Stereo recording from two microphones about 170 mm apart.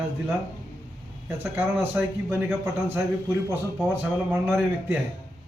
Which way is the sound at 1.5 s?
15° right (ahead or behind).